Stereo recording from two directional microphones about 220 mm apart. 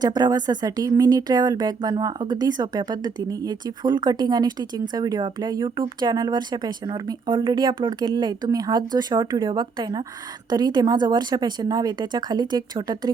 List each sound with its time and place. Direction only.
0.0 s speech: 20° right (ahead or behind)